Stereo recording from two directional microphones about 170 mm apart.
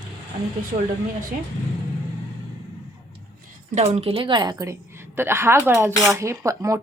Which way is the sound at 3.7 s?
40° right (ahead or behind).